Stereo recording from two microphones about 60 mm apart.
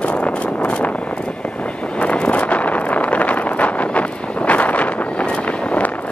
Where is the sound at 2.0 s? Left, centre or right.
Left.